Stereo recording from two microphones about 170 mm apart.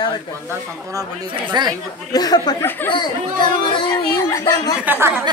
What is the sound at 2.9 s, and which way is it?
Speech, 25° left (ahead or behind).